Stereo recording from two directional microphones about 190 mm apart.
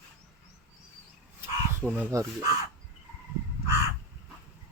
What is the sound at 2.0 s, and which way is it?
Speech, 15° right (ahead or behind).